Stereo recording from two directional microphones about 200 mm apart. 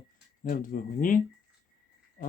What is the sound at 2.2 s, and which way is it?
Insect, 45° left (ahead or behind).